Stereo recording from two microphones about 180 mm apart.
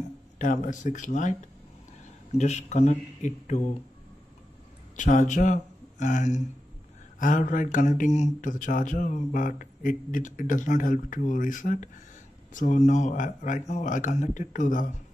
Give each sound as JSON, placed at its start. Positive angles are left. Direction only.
{"t": 0.4, "sound": "speech", "side_deg": 45}
{"t": 2.3, "sound": "speech", "side_deg": 40}
{"t": 4.9, "sound": "speech", "side_deg": 45}